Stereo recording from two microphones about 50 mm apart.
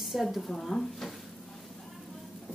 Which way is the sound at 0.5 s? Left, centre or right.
Centre.